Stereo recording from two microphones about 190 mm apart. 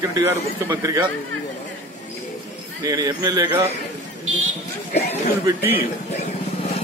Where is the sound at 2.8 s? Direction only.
20° right (ahead or behind).